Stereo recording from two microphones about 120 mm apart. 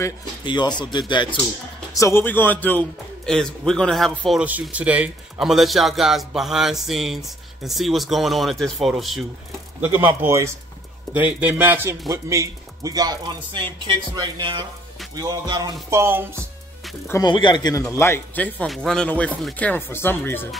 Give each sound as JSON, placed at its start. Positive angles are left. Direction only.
{"t": 0.5, "sound": "speech", "side_deg": 40}
{"t": 2.0, "sound": "a man's voice", "side_deg": 20}
{"t": 4.4, "sound": "a man's voice", "side_deg": -10}
{"t": 9.8, "sound": "a man's voice", "side_deg": -15}
{"t": 15.9, "sound": "speech", "side_deg": -20}
{"t": 17.2, "sound": "speech", "side_deg": 40}
{"t": 17.9, "sound": "speech", "side_deg": 20}